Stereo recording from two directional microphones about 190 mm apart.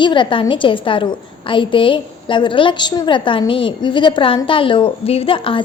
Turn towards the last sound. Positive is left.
turn(degrees=30)  # may be behind; listen again after turning